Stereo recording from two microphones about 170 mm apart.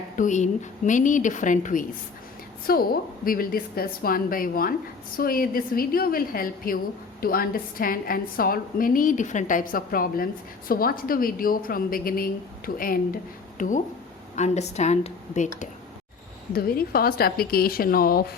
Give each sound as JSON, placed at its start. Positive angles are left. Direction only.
{"t": 0.2, "sound": "a woman's voice", "side_deg": 45}
{"t": 2.6, "sound": "a woman's voice", "side_deg": 60}
{"t": 16.5, "sound": "a woman's voice", "side_deg": 65}